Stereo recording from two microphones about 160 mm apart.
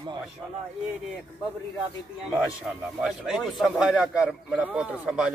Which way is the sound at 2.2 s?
5° right (ahead or behind).